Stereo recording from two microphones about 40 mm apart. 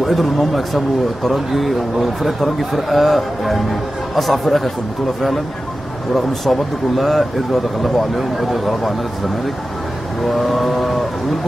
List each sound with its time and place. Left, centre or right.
0.0 s speech: centre
6.1 s speech: centre
10.2 s speech: centre